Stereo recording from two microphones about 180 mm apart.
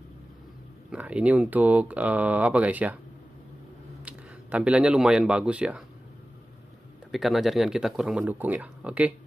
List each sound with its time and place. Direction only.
0.9 s speech: 5° right (ahead or behind)
4.0 s speech: 5° right (ahead or behind)
7.1 s speech: centre (ahead or behind)